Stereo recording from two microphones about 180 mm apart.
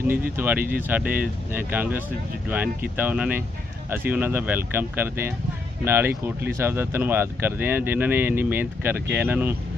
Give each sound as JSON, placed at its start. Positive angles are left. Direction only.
{"t": 0.3, "sound": "speech", "side_deg": -10}